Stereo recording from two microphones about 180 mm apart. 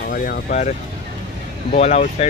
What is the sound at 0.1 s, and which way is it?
Speech, 50° left (ahead or behind).